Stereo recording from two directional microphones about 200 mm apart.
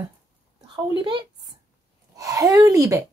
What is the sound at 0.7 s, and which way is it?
Speech, 20° right (ahead or behind).